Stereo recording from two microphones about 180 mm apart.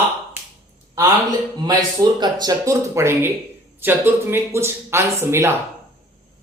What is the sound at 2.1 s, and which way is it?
Speech, 25° right (ahead or behind).